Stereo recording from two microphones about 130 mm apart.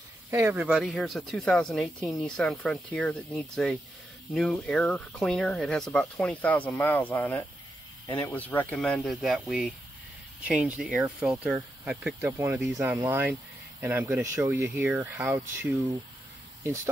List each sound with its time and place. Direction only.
0.3 s speech: 20° right (ahead or behind)
0.6 s speech: 5° right (ahead or behind)
12.3 s speech: 20° right (ahead or behind)